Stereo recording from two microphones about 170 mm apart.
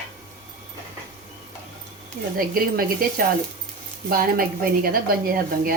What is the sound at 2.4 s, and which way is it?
A woman's voice, 60° right (ahead or behind).